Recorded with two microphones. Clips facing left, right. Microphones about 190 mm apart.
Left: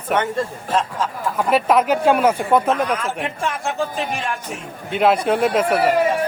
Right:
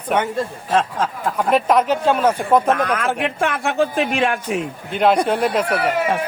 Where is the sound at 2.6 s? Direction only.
60° right (ahead or behind).